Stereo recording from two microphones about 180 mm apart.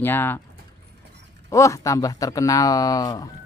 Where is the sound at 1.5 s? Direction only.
15° left (ahead or behind).